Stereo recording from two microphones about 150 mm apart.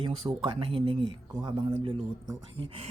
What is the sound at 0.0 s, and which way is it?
Speech, 35° right (ahead or behind).